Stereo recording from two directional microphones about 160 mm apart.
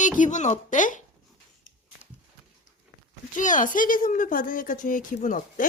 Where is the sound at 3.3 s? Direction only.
55° left (ahead or behind).